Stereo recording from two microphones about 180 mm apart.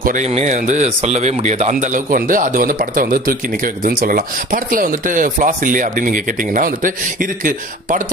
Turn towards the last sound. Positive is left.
turn(degrees=-50)  # may be behind; listen again after turning